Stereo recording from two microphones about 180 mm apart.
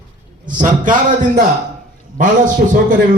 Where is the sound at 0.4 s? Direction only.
45° right (ahead or behind).